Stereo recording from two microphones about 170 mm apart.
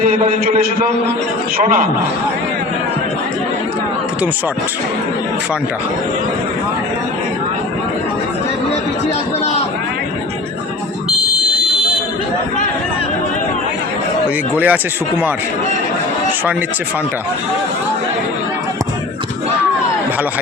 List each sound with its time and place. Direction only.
0.0 s a man's voice: 55° right (ahead or behind)
14.5 s speech: 10° right (ahead or behind)